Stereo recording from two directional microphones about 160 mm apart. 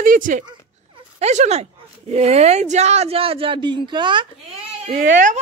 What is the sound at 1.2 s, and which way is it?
Speech, 45° right (ahead or behind).